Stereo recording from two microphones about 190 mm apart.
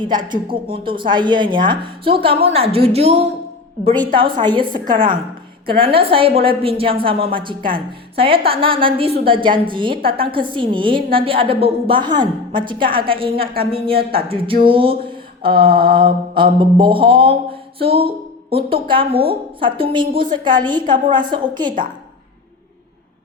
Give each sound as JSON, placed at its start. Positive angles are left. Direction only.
{"t": 0.3, "sound": "a woman's voice", "side_deg": -25}
{"t": 13.9, "sound": "mantra", "side_deg": -50}
{"t": 14.3, "sound": "a woman's voice", "side_deg": -30}
{"t": 15.4, "sound": "mantra", "side_deg": -50}
{"t": 16.0, "sound": "a woman's voice", "side_deg": -25}